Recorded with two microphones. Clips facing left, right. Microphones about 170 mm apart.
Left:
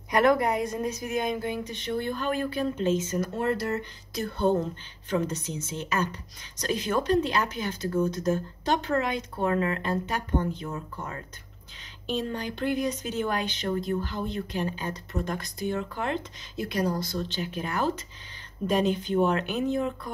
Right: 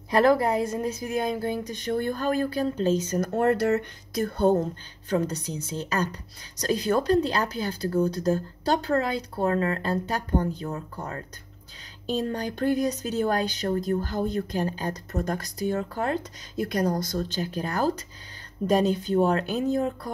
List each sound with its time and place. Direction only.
0.1 s speech: 30° right (ahead or behind); by 3.8 s 65° right (ahead or behind)
4.1 s speech: 45° right (ahead or behind)